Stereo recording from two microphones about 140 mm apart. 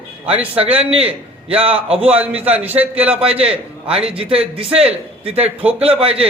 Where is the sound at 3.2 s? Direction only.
45° right (ahead or behind).